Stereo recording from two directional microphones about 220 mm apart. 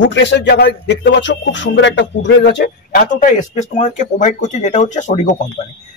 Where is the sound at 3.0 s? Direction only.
35° left (ahead or behind).